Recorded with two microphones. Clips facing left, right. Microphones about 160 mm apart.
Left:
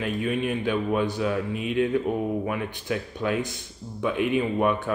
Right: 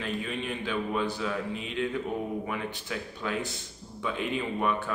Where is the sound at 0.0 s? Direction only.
15° left (ahead or behind).